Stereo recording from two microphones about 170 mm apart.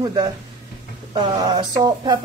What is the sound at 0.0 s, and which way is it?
Speech, 25° right (ahead or behind).